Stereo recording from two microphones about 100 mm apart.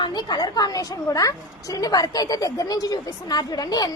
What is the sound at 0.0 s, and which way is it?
A woman's voice, 45° left (ahead or behind).